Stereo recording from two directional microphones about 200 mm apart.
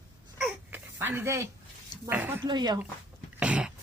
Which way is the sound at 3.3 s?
5° right (ahead or behind).